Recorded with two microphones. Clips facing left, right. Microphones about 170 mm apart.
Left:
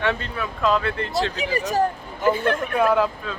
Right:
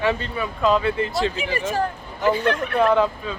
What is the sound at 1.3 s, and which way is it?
Speech, 40° left (ahead or behind).